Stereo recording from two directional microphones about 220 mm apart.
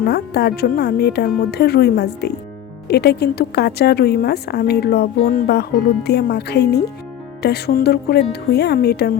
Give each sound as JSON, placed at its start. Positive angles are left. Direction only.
{"t": 0.0, "sound": "speech", "side_deg": 45}